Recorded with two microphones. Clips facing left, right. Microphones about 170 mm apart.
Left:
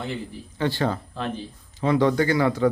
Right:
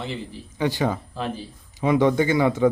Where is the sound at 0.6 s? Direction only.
15° right (ahead or behind).